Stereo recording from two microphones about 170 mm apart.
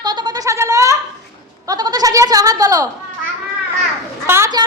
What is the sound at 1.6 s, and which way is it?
Bleat, 20° right (ahead or behind).